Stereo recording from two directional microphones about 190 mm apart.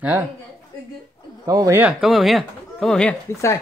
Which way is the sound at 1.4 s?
20° right (ahead or behind).